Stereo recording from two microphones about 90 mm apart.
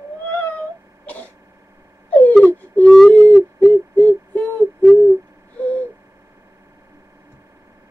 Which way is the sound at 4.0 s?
15° left (ahead or behind).